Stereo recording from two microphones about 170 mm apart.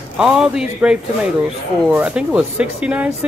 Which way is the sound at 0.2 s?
5° right (ahead or behind).